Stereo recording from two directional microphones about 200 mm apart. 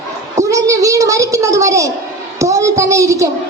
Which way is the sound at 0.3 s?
15° right (ahead or behind).